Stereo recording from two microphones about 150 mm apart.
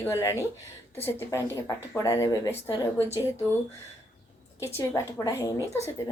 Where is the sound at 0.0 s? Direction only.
20° left (ahead or behind).